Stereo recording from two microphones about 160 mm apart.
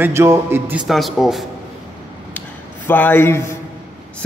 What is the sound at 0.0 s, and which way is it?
Speech, 15° right (ahead or behind).